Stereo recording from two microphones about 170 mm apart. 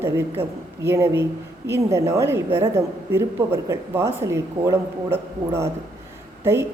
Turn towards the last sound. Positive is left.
turn(degrees=-15)  # may be behind; listen again after turning